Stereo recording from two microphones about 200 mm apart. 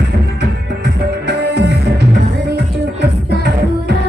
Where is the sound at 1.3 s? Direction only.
55° right (ahead or behind).